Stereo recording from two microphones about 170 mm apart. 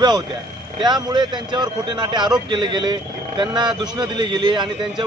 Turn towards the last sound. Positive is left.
turn(degrees=-25)  # may be behind; listen again after turning